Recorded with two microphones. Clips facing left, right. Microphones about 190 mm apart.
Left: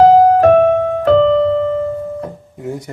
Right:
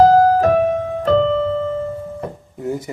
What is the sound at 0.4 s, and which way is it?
Keyboard, 60° left (ahead or behind).